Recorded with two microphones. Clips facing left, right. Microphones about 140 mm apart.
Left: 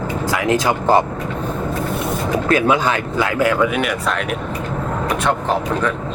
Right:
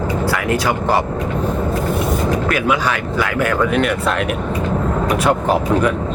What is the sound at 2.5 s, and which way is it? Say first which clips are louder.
Speech: left 2 dB; 25° left (ahead or behind).